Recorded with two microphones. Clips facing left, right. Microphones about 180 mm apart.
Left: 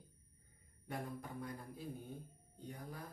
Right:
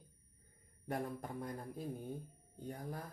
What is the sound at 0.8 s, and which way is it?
Speech, 45° right (ahead or behind).